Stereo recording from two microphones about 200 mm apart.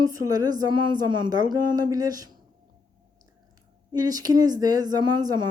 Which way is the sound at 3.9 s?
20° right (ahead or behind).